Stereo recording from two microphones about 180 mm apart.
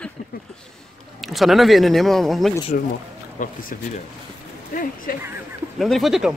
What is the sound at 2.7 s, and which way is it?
Speech, 55° left (ahead or behind).